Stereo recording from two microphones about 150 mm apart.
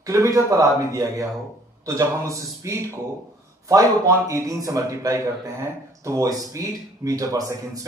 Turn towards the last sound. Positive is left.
turn(degrees=-20)  # may be behind; listen again after turning